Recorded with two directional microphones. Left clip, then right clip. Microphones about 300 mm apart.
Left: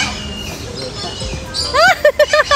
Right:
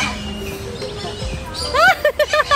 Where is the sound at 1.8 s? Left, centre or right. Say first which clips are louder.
Left 3 dB; centre.